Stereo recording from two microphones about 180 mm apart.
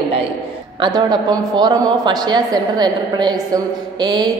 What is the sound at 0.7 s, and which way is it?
A woman's voice, 25° right (ahead or behind).